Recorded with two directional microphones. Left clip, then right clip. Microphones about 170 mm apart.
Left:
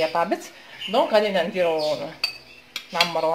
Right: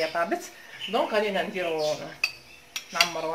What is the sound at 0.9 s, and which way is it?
Speech, 30° left (ahead or behind).